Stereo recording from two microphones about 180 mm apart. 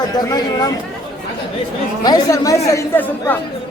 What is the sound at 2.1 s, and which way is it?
Speech, 20° left (ahead or behind).